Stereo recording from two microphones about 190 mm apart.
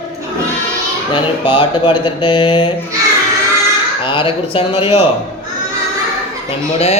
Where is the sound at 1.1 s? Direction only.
25° left (ahead or behind).